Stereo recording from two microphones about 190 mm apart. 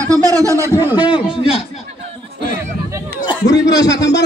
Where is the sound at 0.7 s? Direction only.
20° left (ahead or behind).